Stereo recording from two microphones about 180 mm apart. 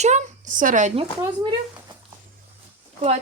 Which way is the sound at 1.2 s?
25° right (ahead or behind).